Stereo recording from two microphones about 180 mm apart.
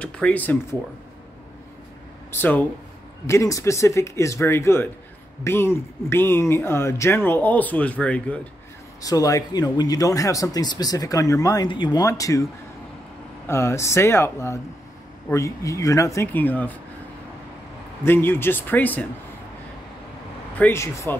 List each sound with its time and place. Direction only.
0.0 s speech: 10° left (ahead or behind)
2.3 s speech: 10° left (ahead or behind)
9.0 s speech: 20° left (ahead or behind)
13.5 s speech: 15° left (ahead or behind)
18.0 s speech: 10° left (ahead or behind)
20.5 s speech: 10° left (ahead or behind)